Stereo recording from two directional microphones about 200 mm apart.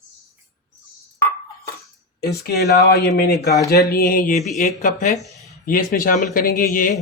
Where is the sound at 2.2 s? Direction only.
55° left (ahead or behind).